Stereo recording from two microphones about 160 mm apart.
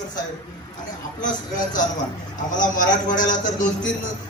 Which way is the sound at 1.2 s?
55° left (ahead or behind).